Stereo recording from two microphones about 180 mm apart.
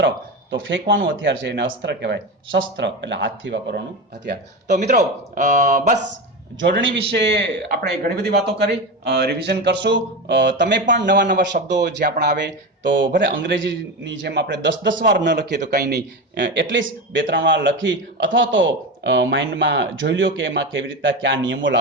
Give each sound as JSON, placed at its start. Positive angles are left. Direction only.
{"t": 0.7, "sound": "speech", "side_deg": -90}
{"t": 4.7, "sound": "speech", "side_deg": -40}
{"t": 6.7, "sound": "speech", "side_deg": -90}
{"t": 7.1, "sound": "a man's voice", "side_deg": -70}
{"t": 14.5, "sound": "a man's voice", "side_deg": -85}
{"t": 15.6, "sound": "a man's voice", "side_deg": -55}
{"t": 16.3, "sound": "speech", "side_deg": -90}